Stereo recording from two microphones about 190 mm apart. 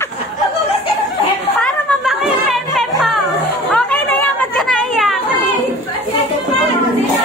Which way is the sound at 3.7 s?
10° left (ahead or behind).